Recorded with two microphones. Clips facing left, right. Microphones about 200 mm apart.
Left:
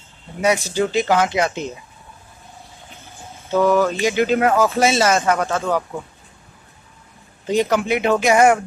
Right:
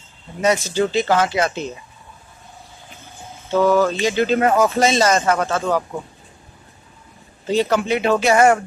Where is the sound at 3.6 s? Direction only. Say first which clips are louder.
Even; 15° left (ahead or behind).